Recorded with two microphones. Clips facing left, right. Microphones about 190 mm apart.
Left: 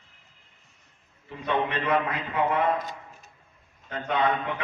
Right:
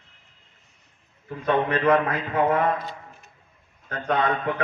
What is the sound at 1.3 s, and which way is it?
A man's voice, 50° right (ahead or behind).